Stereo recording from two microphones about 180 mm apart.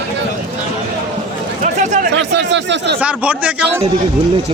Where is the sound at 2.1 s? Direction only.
70° right (ahead or behind).